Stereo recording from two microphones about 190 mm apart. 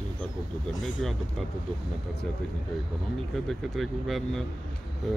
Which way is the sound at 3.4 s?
Centre (ahead or behind).